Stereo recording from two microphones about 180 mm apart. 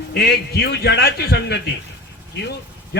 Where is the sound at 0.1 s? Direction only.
60° left (ahead or behind).